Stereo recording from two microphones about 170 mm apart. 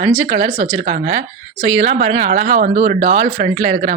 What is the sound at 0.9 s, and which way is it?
Speech, 50° right (ahead or behind).